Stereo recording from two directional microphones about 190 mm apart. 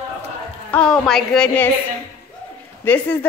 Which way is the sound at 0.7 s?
5° left (ahead or behind).